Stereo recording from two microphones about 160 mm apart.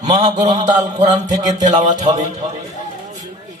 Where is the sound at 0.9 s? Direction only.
50° right (ahead or behind).